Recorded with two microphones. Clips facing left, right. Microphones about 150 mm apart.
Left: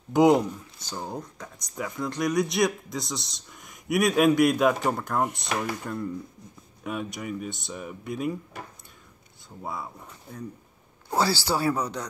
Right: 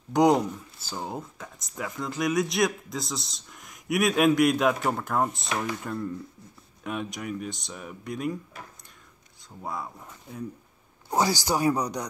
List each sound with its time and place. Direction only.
0.1 s speech: centre (ahead or behind)
9.6 s speech: centre (ahead or behind)
11.1 s speech: 15° right (ahead or behind)